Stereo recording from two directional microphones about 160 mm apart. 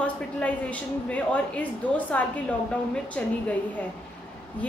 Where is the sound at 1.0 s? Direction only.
10° left (ahead or behind).